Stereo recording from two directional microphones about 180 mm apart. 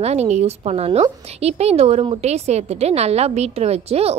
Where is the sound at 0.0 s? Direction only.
35° right (ahead or behind).